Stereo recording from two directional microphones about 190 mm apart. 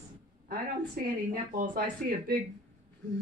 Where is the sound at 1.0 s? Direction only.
45° right (ahead or behind).